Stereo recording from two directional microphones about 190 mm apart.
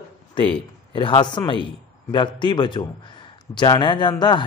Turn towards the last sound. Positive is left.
turn(degrees=25)  # may be behind; listen again after turning